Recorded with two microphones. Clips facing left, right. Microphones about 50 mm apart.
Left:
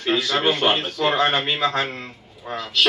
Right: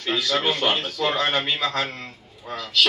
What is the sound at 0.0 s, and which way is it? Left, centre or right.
A man's voice, left.